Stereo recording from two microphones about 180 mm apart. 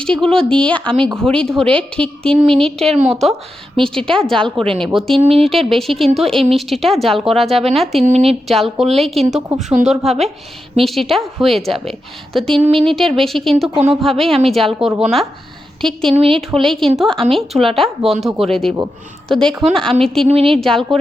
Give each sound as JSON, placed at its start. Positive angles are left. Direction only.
{"t": 0.0, "sound": "speech", "side_deg": 5}
{"t": 5.1, "sound": "speech", "side_deg": -30}
{"t": 5.5, "sound": "speech", "side_deg": 0}
{"t": 8.0, "sound": "speech", "side_deg": -35}
{"t": 8.4, "sound": "speech", "side_deg": 0}
{"t": 12.5, "sound": "speech", "side_deg": -30}
{"t": 13.1, "sound": "speech", "side_deg": 0}
{"t": 16.1, "sound": "speech", "side_deg": -30}
{"t": 16.5, "sound": "speech", "side_deg": 0}
{"t": 20.2, "sound": "speech", "side_deg": -30}
{"t": 20.6, "sound": "speech", "side_deg": 0}